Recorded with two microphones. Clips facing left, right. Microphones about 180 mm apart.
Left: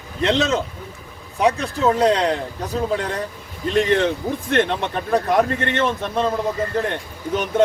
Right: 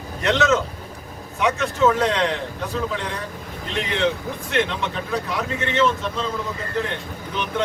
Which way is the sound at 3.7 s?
45° left (ahead or behind).